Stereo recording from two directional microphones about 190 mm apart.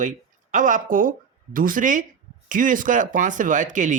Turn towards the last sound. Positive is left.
turn(degrees=-40)  # may be behind; listen again after turning